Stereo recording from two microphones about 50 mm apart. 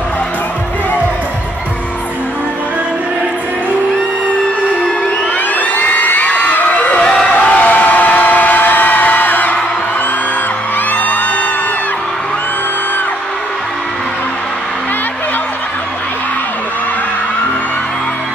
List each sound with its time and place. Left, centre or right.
5.6 s crowd: left
7.2 s a sound: left
10.9 s music: left